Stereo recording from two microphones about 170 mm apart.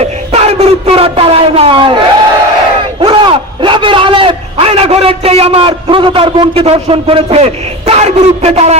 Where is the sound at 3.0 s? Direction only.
30° right (ahead or behind).